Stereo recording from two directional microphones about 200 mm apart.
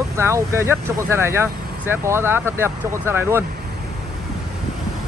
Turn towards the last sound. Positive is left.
turn(degrees=-10)  # may be behind; listen again after turning